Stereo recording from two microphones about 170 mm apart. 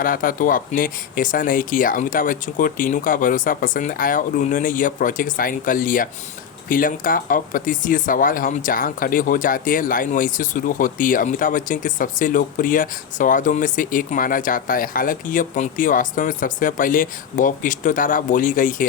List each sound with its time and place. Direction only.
0.0 s speech: 55° left (ahead or behind)